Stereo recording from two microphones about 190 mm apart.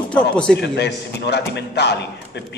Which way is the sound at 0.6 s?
60° left (ahead or behind).